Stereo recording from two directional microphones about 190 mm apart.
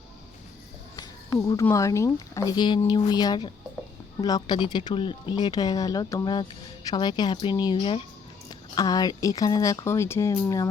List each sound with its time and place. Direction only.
1.5 s speech: 15° left (ahead or behind)